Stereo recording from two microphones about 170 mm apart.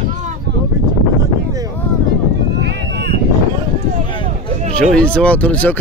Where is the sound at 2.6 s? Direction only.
85° right.